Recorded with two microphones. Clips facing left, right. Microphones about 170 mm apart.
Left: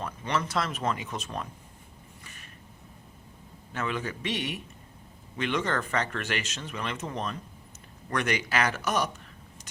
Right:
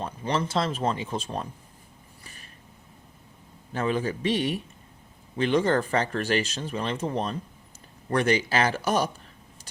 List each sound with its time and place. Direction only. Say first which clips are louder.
0.0 s speech: right 3 dB; 30° right (ahead or behind)
2.2 s a sound: right 1 dB; 35° right (ahead or behind)
3.7 s speech: right 6 dB; 35° right (ahead or behind)